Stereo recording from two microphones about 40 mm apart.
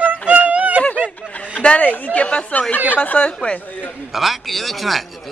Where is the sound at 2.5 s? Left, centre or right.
Left.